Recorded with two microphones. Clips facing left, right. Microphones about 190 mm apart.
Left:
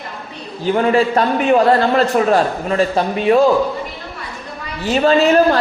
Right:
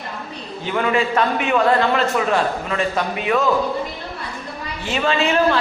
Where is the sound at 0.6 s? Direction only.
35° left (ahead or behind).